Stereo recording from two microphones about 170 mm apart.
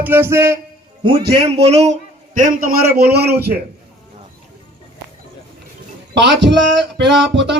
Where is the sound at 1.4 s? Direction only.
35° right (ahead or behind); by 3.5 s 70° right (ahead or behind).